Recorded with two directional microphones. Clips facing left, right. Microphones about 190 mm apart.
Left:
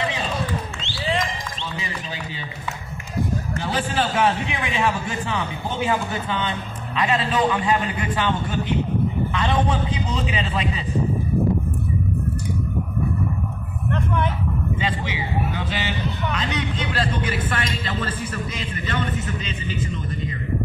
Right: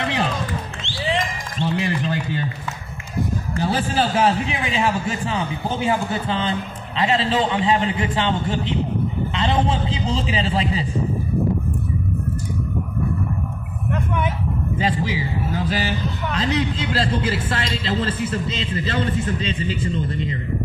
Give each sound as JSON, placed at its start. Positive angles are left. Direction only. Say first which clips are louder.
{"t": 0.0, "sound": "a sound", "louder": "right 3 dB", "side_deg": -60}
{"t": 1.8, "sound": "speech", "louder": "right 9 dB", "side_deg": -60}
{"t": 3.5, "sound": "a man's voice", "louder": "right 4 dB", "side_deg": -35}
{"t": 14.8, "sound": "a man's voice", "louder": "right 4 dB", "side_deg": -35}